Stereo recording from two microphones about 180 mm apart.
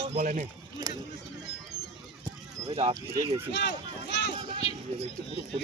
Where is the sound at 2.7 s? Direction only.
30° right (ahead or behind).